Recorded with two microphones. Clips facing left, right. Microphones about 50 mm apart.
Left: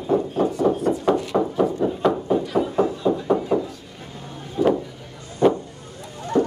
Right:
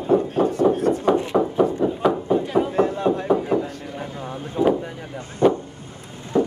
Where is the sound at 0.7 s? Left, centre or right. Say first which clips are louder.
Right 2 dB; right.